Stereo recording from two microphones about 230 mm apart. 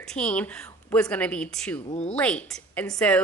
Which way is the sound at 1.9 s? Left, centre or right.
Left.